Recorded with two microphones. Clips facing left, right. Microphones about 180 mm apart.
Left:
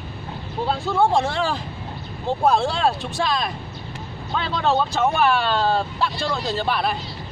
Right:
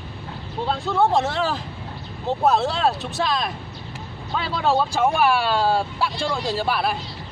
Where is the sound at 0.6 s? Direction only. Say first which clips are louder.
Left 1 dB; 5° left (ahead or behind).